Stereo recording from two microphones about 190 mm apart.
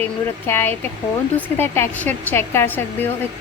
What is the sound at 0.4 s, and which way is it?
A woman's voice, 10° left (ahead or behind).